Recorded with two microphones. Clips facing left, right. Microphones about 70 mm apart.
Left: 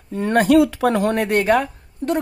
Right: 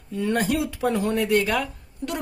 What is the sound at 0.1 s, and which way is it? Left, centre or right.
Speech, left.